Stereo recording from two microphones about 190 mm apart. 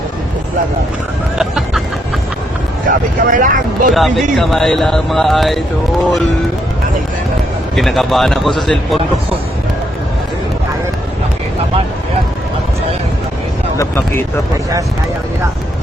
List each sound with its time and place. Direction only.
1.4 s chicken: centre (ahead or behind)
2.8 s speech: 45° right (ahead or behind)
3.9 s speech: centre (ahead or behind)
7.8 s speech: centre (ahead or behind)
13.7 s speech: 10° left (ahead or behind)